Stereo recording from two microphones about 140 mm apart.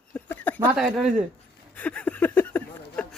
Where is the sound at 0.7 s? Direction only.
5° right (ahead or behind).